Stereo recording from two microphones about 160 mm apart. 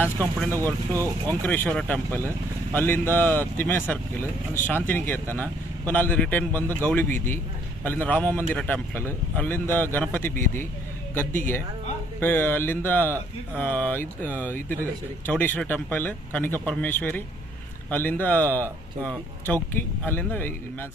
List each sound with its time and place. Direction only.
0.2 s speech: 10° left (ahead or behind)
0.6 s speech: 20° right (ahead or behind)
1.4 s speech: 10° left (ahead or behind)
12.2 s speech: 10° left (ahead or behind)